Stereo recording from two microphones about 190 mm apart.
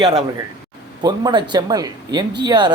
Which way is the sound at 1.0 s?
20° right (ahead or behind).